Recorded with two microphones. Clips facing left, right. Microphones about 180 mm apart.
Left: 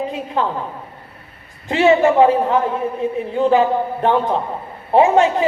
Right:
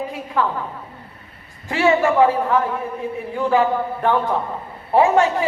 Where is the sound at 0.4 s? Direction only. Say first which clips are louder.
Even; 20° left (ahead or behind).